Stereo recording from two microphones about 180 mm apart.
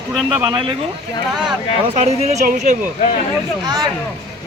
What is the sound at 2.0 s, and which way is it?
Speech, 40° right (ahead or behind).